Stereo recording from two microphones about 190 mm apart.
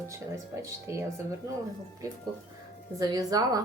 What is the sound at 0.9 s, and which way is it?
Speech, 15° right (ahead or behind).